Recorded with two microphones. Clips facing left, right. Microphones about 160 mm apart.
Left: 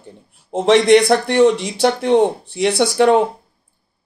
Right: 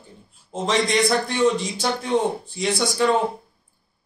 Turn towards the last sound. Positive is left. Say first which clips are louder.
# left 7 dB
turn(degrees=70)  # may be behind; listen again after turning